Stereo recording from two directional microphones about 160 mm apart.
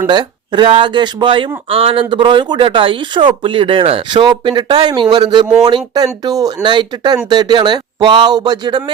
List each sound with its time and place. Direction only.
0.1 s speech: 30° right (ahead or behind)